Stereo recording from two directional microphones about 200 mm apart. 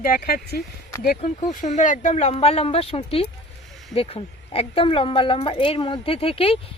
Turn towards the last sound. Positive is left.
turn(degrees=30)  # may be behind; listen again after turning